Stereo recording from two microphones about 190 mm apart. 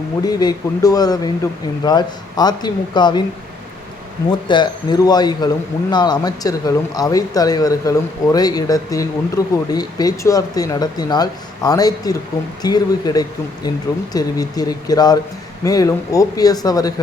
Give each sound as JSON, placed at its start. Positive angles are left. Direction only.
{"t": 0.3, "sound": "speech", "side_deg": 20}
{"t": 4.3, "sound": "speech", "side_deg": 25}